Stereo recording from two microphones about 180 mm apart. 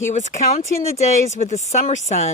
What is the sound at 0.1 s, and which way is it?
Speech, 40° left (ahead or behind).